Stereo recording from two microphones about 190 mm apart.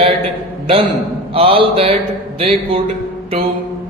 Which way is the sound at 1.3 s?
30° right (ahead or behind).